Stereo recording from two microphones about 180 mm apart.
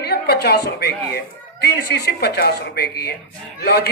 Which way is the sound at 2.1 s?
65° left (ahead or behind).